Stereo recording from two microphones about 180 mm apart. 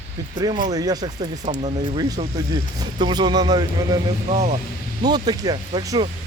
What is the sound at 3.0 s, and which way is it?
Speech, 25° right (ahead or behind).